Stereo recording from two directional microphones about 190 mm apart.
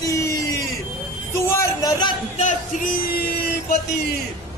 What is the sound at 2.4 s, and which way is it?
Music, 40° left (ahead or behind).